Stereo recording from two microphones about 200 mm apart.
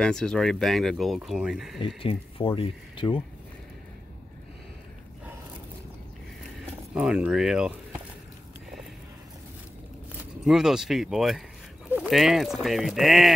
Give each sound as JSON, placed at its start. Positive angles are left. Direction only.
{"t": 0.0, "sound": "speech", "side_deg": 5}
{"t": 1.8, "sound": "speech", "side_deg": 25}
{"t": 6.9, "sound": "speech", "side_deg": -5}
{"t": 10.4, "sound": "speech", "side_deg": 0}